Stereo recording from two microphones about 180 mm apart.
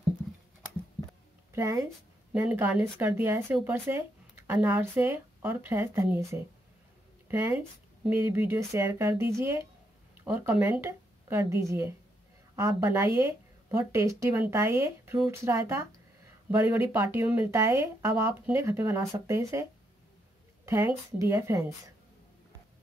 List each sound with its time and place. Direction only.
1.5 s a woman's voice: 15° right (ahead or behind)
20.6 s speech: 15° right (ahead or behind)